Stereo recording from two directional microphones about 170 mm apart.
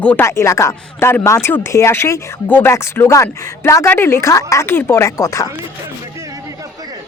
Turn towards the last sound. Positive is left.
turn(degrees=20)  # may be behind; listen again after turning